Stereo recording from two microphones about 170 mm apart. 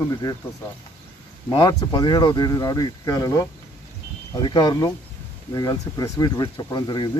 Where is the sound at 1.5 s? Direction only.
25° left (ahead or behind).